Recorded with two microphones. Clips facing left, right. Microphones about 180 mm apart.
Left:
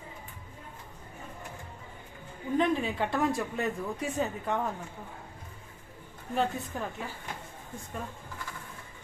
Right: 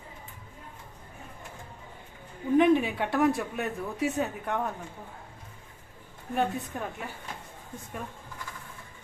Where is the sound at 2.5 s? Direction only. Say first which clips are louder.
Right 6 dB; 15° right (ahead or behind).